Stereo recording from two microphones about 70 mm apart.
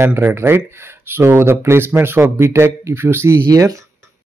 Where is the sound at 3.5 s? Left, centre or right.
Right.